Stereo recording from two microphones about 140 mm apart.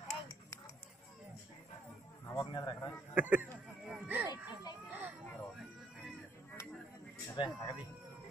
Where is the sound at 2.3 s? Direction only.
30° left (ahead or behind).